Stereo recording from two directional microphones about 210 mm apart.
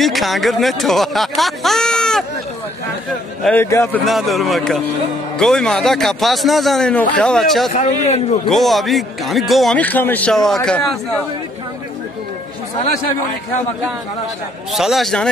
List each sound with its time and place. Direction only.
0.0 s a man's voice: centre (ahead or behind)
3.6 s a man's voice: 15° left (ahead or behind)
4.0 s a man's voice: centre (ahead or behind)
7.7 s a man's voice: 30° left (ahead or behind)
8.5 s a man's voice: centre (ahead or behind)
14.7 s a man's voice: centre (ahead or behind)